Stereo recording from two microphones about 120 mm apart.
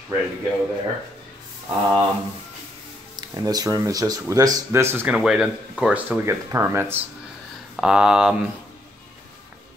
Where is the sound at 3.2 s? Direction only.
35° right (ahead or behind).